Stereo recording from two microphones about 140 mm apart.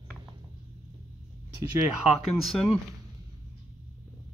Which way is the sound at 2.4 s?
Centre (ahead or behind).